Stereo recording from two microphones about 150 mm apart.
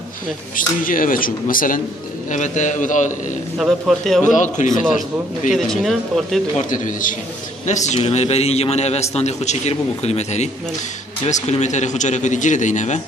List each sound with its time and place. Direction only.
0.6 s speech: 65° left (ahead or behind)
2.3 s a man's voice: 55° left (ahead or behind)
3.5 s speech: centre (ahead or behind)
4.2 s a man's voice: 55° left (ahead or behind)
5.5 s speech: centre (ahead or behind)
6.7 s a man's voice: 60° left (ahead or behind)